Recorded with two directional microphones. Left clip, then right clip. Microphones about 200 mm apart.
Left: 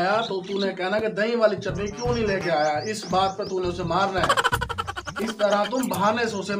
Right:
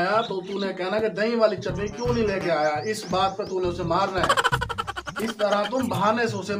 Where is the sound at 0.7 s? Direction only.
Centre (ahead or behind).